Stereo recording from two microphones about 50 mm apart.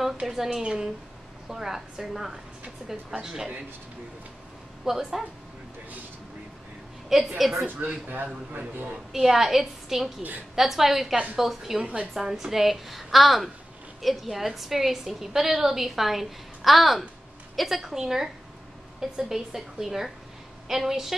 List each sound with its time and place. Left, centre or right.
0.3 s a woman's voice: centre
4.8 s a woman's voice: centre
7.1 s a woman's voice: centre
7.8 s speech: right
9.1 s a woman's voice: centre
11.8 s a woman's voice: right
12.1 s a woman's voice: centre